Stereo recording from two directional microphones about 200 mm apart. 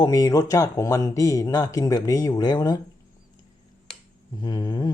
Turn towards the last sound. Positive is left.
turn(degrees=20)  # may be behind; listen again after turning